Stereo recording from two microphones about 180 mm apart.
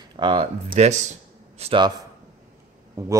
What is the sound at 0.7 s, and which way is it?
Speech, 40° right (ahead or behind).